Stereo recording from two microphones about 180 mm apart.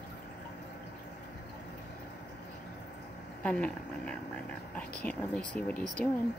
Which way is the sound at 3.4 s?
10° left (ahead or behind).